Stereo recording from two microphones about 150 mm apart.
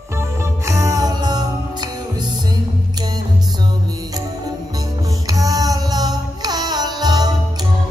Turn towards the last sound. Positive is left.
turn(degrees=-25)  # may be behind; listen again after turning